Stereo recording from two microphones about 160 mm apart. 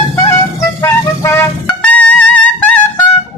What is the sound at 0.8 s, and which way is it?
Vehicle, 15° left (ahead or behind).